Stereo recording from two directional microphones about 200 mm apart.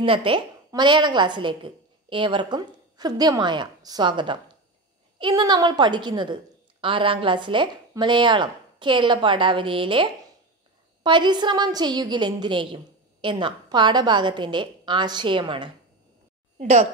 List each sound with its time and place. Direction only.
0.0 s a woman's voice: 25° right (ahead or behind)
11.1 s a woman's voice: 20° right (ahead or behind)